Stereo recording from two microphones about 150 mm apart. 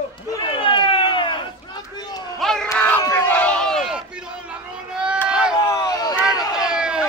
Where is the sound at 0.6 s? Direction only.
35° left (ahead or behind).